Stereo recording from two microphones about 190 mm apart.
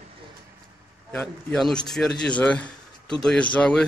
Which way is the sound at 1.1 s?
5° left (ahead or behind).